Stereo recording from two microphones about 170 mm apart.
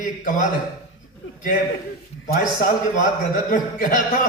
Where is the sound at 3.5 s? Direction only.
50° left (ahead or behind).